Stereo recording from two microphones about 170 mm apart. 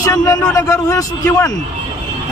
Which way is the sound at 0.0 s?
20° left (ahead or behind).